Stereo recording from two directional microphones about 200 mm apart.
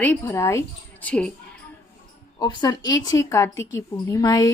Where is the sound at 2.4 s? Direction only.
20° left (ahead or behind).